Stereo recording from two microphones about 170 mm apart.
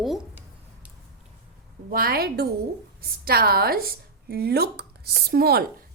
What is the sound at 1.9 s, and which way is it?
A woman's voice, 60° right (ahead or behind).